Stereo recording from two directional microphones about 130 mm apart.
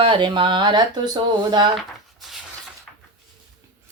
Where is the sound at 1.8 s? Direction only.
Centre (ahead or behind).